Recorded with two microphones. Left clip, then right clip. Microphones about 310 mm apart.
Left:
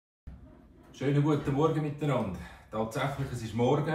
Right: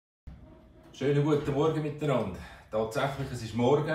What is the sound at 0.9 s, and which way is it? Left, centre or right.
Speech, centre.